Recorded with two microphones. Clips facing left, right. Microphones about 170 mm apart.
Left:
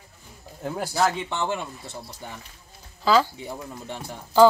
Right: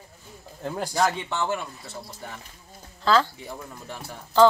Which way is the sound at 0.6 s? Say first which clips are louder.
Even; 10° left (ahead or behind).